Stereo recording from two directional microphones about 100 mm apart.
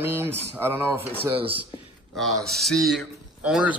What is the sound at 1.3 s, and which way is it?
Speech, 60° right (ahead or behind).